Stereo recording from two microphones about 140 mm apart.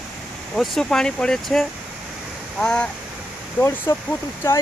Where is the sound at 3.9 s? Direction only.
20° left (ahead or behind).